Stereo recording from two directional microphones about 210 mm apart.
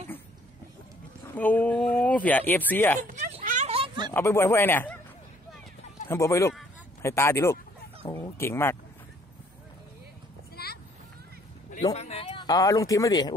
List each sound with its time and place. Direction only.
1.3 s speech: 10° left (ahead or behind)
3.0 s a sound: 35° right (ahead or behind)
4.1 s speech: 10° left (ahead or behind)
6.0 s speech: 15° left (ahead or behind)
10.5 s a sound: 50° left (ahead or behind)
11.7 s speech: 30° left (ahead or behind)